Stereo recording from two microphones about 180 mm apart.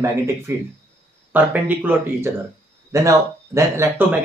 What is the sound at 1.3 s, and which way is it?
Speech, 10° right (ahead or behind).